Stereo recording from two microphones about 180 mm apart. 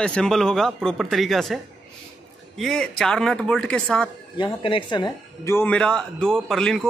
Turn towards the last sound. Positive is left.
turn(degrees=5)  # may be behind; listen again after turning